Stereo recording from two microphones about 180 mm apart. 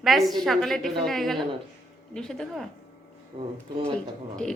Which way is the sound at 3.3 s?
30° right (ahead or behind).